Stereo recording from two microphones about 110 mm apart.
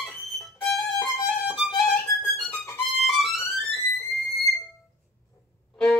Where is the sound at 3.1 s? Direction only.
Centre (ahead or behind).